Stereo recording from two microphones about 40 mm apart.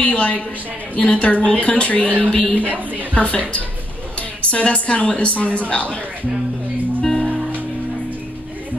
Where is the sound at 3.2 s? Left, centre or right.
Left.